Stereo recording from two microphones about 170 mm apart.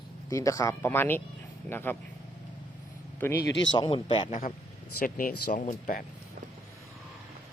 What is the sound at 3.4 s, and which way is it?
Speech, 90° left.